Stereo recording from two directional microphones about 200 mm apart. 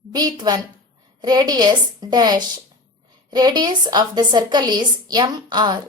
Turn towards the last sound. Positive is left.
turn(degrees=-20)  # may be behind; listen again after turning